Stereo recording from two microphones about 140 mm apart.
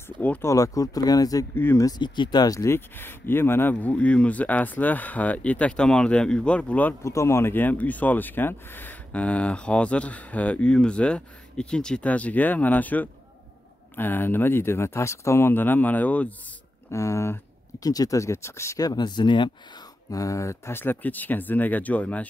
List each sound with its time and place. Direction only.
0.2 s speech: 10° left (ahead or behind)
0.5 s speech: 25° left (ahead or behind)
1.5 s speech: 15° left (ahead or behind)
16.9 s speech: 20° left (ahead or behind)
20.1 s speech: 25° left (ahead or behind)